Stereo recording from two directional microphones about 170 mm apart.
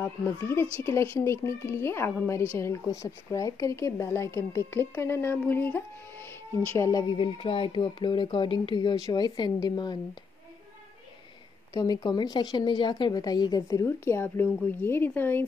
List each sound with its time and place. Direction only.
0.0 s speech: 15° left (ahead or behind)
6.8 s a woman's voice: 20° left (ahead or behind)
11.7 s a woman's voice: 20° left (ahead or behind)